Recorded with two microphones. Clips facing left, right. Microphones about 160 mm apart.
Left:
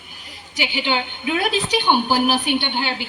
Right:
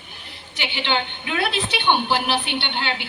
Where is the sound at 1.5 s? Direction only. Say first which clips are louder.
Left 4 dB; 40° left (ahead or behind).